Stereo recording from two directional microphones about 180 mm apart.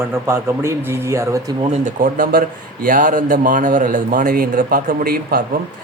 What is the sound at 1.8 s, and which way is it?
A man's voice, 50° right (ahead or behind).